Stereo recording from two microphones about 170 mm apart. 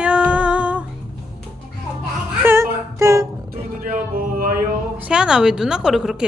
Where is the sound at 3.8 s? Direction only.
55° right (ahead or behind).